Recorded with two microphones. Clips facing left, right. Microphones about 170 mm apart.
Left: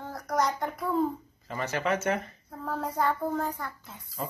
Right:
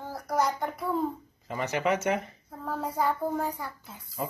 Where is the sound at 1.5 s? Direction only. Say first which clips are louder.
Right 2 dB; 15° right (ahead or behind).